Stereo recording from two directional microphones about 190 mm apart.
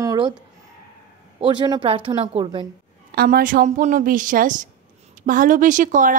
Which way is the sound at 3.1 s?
50° right (ahead or behind).